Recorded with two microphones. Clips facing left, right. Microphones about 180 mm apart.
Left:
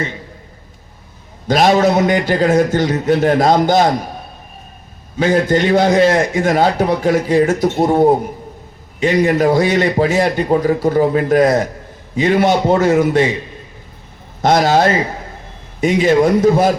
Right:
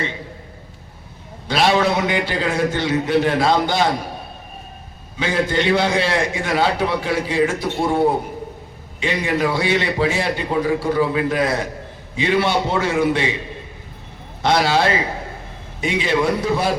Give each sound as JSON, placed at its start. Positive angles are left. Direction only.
{"t": 1.5, "sound": "a man's voice", "side_deg": 45}
{"t": 5.1, "sound": "a man's voice", "side_deg": 45}
{"t": 14.4, "sound": "a man's voice", "side_deg": 45}